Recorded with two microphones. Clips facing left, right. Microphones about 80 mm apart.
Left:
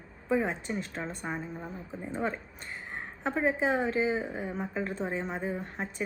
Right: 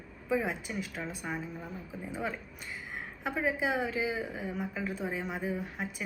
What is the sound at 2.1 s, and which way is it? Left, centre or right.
A woman's voice, left.